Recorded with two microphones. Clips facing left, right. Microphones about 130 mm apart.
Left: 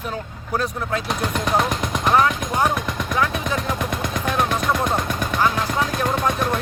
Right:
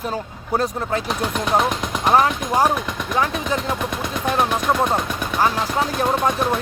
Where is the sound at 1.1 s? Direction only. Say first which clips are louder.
Right 1 dB; 10° right (ahead or behind).